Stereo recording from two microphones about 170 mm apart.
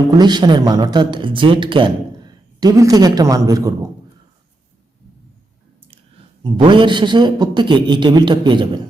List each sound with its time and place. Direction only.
0.2 s speech: 25° right (ahead or behind)
6.4 s speech: 30° right (ahead or behind)